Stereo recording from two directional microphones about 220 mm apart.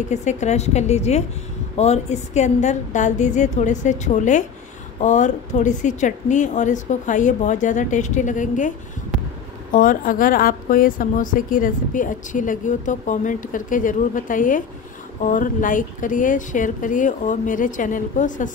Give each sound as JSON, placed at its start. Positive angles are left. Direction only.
{"t": 0.1, "sound": "a woman's voice", "side_deg": 30}